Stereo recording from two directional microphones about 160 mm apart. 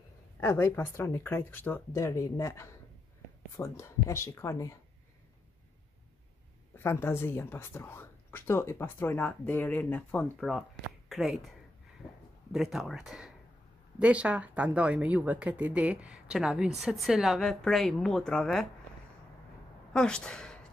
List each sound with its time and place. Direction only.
0.4 s speech: 15° left (ahead or behind)
6.8 s speech: 15° left (ahead or behind); by 11.5 s centre (ahead or behind)
12.5 s speech: centre (ahead or behind)
19.9 s speech: 5° left (ahead or behind)